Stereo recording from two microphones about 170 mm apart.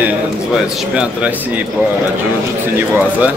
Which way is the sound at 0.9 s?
10° right (ahead or behind).